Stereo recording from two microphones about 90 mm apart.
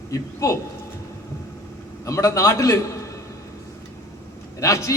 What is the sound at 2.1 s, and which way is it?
A man's voice, 35° left (ahead or behind).